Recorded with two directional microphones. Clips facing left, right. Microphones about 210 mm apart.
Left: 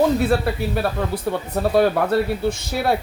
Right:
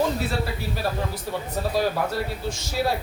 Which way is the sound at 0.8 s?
60° left (ahead or behind).